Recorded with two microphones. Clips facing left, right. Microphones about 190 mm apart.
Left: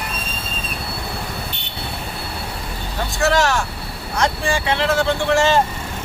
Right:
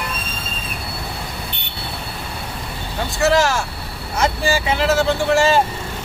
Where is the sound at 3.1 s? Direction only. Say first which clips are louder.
Right 1 dB; centre (ahead or behind).